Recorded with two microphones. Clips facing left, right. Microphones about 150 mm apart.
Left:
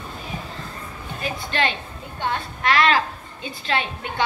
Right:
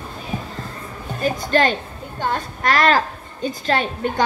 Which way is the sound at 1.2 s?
40° right (ahead or behind).